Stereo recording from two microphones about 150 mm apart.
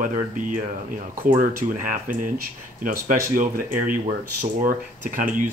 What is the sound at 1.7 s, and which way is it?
Speech, 60° right (ahead or behind).